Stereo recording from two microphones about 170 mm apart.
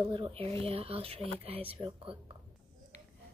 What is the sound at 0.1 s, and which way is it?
Speech, 30° right (ahead or behind).